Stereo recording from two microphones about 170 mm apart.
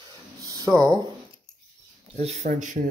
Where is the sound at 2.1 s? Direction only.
40° right (ahead or behind).